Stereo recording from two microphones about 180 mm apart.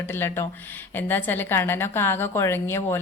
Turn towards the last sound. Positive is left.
turn(degrees=15)  # may be behind; listen again after turning